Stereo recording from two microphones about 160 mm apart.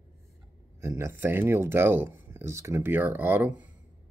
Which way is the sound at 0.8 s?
15° right (ahead or behind).